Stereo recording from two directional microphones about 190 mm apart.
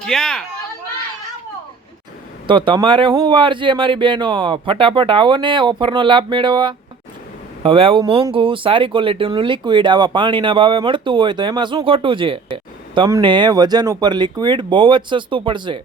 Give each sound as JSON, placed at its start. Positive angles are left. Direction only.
{"t": 0.0, "sound": "speech", "side_deg": 5}
{"t": 2.5, "sound": "speech", "side_deg": -25}